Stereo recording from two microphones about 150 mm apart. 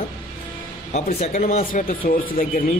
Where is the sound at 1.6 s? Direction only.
65° left (ahead or behind).